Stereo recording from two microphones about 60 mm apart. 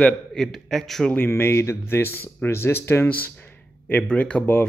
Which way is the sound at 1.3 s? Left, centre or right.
Left.